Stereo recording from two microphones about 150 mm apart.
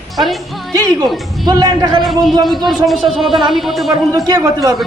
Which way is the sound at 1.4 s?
25° right (ahead or behind).